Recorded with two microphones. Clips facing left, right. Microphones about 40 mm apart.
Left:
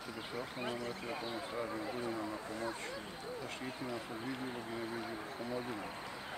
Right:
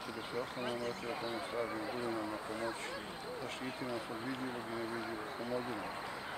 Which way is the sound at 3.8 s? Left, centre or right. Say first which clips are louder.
Right 1 dB; centre.